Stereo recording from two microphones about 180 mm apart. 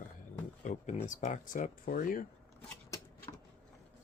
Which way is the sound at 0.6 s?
40° left (ahead or behind).